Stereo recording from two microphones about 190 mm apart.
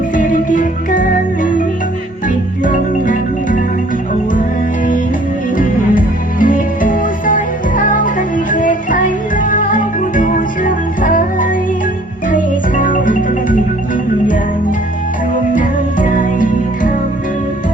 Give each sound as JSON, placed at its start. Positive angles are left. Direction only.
{"t": 0.2, "sound": "music", "side_deg": 45}
{"t": 2.6, "sound": "music", "side_deg": 45}
{"t": 6.4, "sound": "music", "side_deg": 45}
{"t": 15.5, "sound": "music", "side_deg": 45}